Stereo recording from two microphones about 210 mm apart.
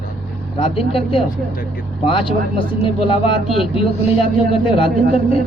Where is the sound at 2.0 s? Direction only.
25° left (ahead or behind).